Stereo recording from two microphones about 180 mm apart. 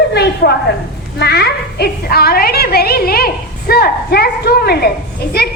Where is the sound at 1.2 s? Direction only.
60° left (ahead or behind).